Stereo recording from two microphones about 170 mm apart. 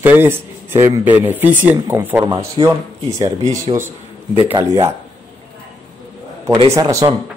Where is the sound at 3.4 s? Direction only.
40° right (ahead or behind).